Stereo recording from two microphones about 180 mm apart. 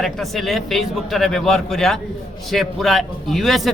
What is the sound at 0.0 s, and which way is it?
Speech, centre (ahead or behind).